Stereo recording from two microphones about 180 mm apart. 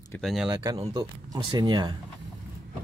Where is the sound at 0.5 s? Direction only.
20° right (ahead or behind).